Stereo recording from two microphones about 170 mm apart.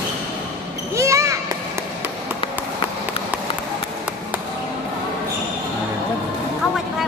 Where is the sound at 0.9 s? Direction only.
15° right (ahead or behind).